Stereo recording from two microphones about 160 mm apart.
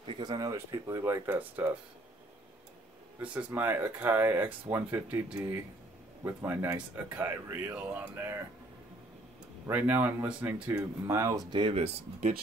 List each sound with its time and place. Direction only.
0.0 s speech: 30° right (ahead or behind); by 1.8 s 15° right (ahead or behind)
3.2 s speech: 10° right (ahead or behind)
9.7 s speech: 10° right (ahead or behind); by 12.4 s 45° right (ahead or behind)